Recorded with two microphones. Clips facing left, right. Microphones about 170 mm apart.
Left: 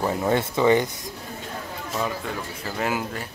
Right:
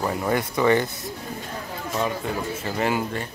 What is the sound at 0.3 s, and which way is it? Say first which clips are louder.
Speech: left 1 dB; 20° left (ahead or behind).